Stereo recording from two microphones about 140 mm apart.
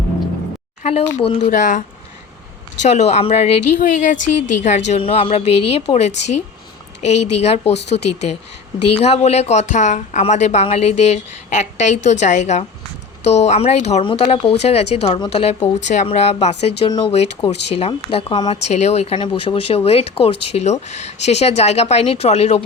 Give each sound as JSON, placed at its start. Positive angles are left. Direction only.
{"t": 0.8, "sound": "speech", "side_deg": 45}
{"t": 1.5, "sound": "speech", "side_deg": 70}
{"t": 2.8, "sound": "speech", "side_deg": 55}
{"t": 3.8, "sound": "a woman's voice", "side_deg": 65}
{"t": 18.7, "sound": "speech", "side_deg": 50}
{"t": 19.2, "sound": "speech", "side_deg": 35}